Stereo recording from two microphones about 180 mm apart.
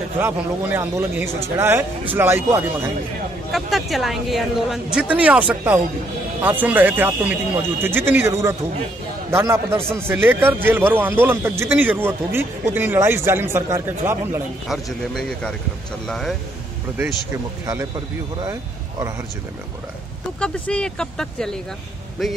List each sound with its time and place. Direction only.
0.2 s a man's voice: 15° right (ahead or behind)
3.5 s a man's voice: centre (ahead or behind)
14.7 s speech: centre (ahead or behind)
18.4 s speech: 20° right (ahead or behind)
20.3 s speech: 5° left (ahead or behind)